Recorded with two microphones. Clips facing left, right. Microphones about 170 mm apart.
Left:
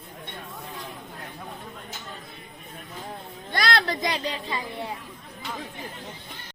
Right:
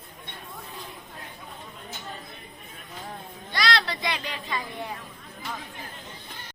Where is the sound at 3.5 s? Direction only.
50° left (ahead or behind); by 4.6 s 30° left (ahead or behind).